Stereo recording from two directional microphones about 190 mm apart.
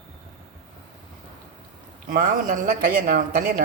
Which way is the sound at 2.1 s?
45° right (ahead or behind).